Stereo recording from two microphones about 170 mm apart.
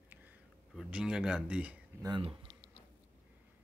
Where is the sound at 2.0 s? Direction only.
25° right (ahead or behind).